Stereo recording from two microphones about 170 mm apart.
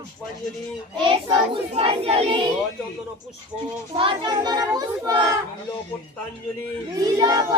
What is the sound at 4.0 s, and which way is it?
A child's voice, 25° right (ahead or behind).